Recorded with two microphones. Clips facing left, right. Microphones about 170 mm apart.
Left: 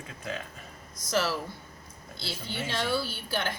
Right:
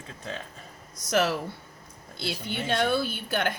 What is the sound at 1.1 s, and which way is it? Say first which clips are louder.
Speech: right 4 dB; 55° right (ahead or behind).